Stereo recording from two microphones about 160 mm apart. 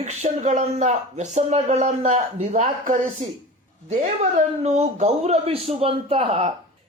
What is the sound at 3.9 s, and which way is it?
A woman's voice, 45° right (ahead or behind).